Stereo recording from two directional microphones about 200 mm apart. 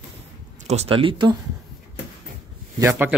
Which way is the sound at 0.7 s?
30° right (ahead or behind).